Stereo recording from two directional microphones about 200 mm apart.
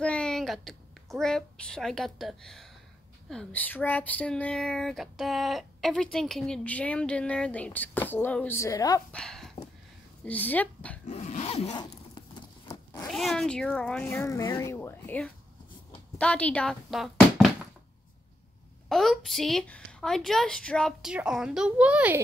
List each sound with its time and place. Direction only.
0.0 s a woman's voice: 5° left (ahead or behind)
9.1 s speech: 5° left (ahead or behind)
11.1 s zipper: 35° left (ahead or behind)
12.4 s a sound: 20° left (ahead or behind)
13.1 s speech: centre (ahead or behind)
18.9 s speech: centre (ahead or behind)